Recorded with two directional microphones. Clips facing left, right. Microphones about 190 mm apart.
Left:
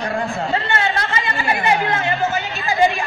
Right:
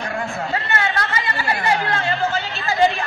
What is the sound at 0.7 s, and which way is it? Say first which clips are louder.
Chatter: left 2 dB; 25° left (ahead or behind).